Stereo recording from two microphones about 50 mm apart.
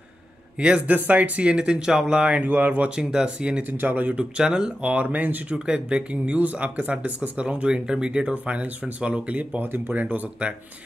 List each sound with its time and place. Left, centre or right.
0.6 s speech: right
2.4 s speech: right
3.0 s speech: centre
3.6 s speech: right; by 4.7 s centre
4.8 s speech: right
5.5 s speech: right